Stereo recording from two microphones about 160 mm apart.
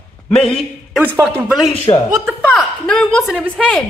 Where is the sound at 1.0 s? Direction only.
10° right (ahead or behind).